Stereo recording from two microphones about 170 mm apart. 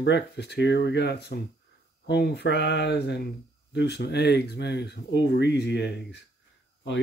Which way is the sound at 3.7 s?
80° left.